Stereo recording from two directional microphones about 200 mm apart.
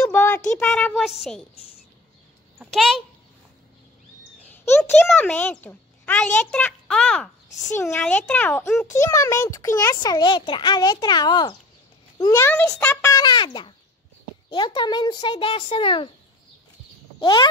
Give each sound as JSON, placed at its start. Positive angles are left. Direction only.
{"t": 0.0, "sound": "a sound", "side_deg": 15}
{"t": 0.6, "sound": "a woman's voice", "side_deg": 5}
{"t": 2.6, "sound": "a woman's voice", "side_deg": 0}
{"t": 4.5, "sound": "a child's voice", "side_deg": 10}
{"t": 17.2, "sound": "speech", "side_deg": 25}